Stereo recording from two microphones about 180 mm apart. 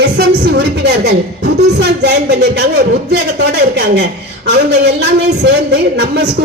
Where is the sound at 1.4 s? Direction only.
65° right (ahead or behind).